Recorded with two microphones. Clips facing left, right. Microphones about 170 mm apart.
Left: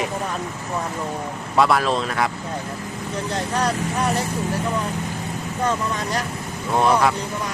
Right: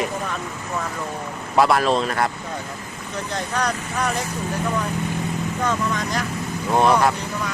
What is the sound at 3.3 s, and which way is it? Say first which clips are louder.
Speech: left 1 dB; 30° left (ahead or behind).